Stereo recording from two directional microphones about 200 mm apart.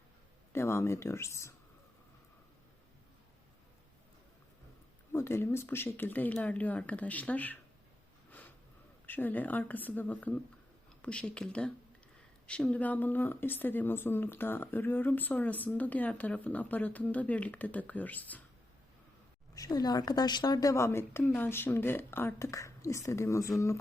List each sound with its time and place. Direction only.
0.5 s speech: 10° left (ahead or behind)
5.1 s speech: 10° left (ahead or behind)
8.3 s a sound: 10° left (ahead or behind)
9.0 s speech: 10° left (ahead or behind)
19.5 s speech: 20° left (ahead or behind)